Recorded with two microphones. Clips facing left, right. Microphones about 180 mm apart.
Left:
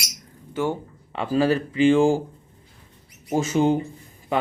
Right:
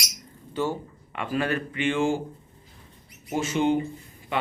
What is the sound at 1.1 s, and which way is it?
A man's voice, 30° left (ahead or behind).